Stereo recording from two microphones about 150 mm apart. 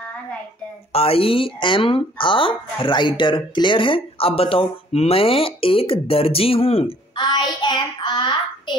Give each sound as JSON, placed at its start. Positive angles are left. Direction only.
{"t": 0.9, "sound": "speech", "side_deg": 40}